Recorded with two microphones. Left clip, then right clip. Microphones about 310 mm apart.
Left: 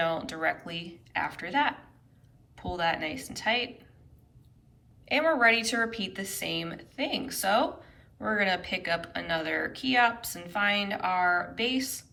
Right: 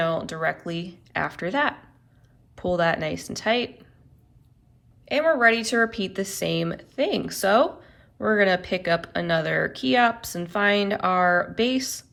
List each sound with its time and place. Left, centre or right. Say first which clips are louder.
0.0 s a woman's voice: right 4 dB; centre
5.0 s a woman's voice: right 4 dB; centre